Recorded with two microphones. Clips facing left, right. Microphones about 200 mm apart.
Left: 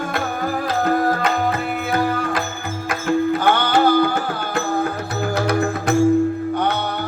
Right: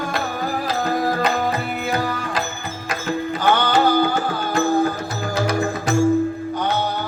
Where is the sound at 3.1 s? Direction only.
55° left (ahead or behind).